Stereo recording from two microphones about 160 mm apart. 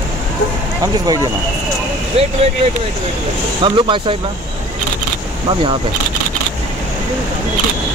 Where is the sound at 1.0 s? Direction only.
25° right (ahead or behind).